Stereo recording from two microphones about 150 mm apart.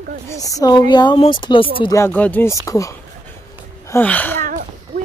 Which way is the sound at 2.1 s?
10° left (ahead or behind).